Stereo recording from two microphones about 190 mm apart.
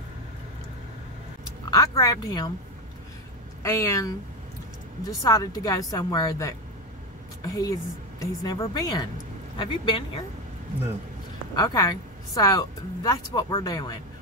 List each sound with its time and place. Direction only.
1.7 s a woman's voice: 20° left (ahead or behind)
3.6 s a woman's voice: 15° left (ahead or behind)
5.2 s a woman's voice: 20° left (ahead or behind)
11.5 s a woman's voice: 20° left (ahead or behind)